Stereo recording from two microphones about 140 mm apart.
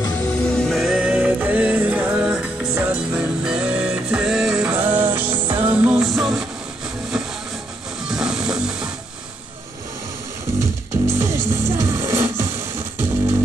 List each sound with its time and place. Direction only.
0.3 s music: 5° left (ahead or behind)
8.1 s music: 5° right (ahead or behind)
10.9 s music: 20° right (ahead or behind)